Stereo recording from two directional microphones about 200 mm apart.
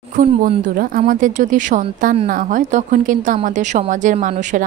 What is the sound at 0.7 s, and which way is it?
A woman's voice, 45° right (ahead or behind).